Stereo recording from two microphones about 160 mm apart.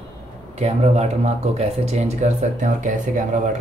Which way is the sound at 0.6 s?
45° right (ahead or behind).